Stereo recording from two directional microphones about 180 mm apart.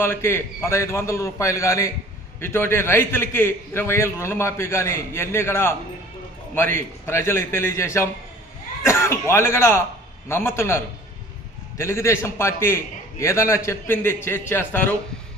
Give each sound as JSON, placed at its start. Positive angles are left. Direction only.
{"t": 0.0, "sound": "a man's voice", "side_deg": 15}
{"t": 11.8, "sound": "a man's voice", "side_deg": 15}